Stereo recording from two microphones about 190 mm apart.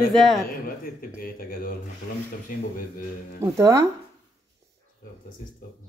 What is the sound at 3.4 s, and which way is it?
Speech, 15° right (ahead or behind).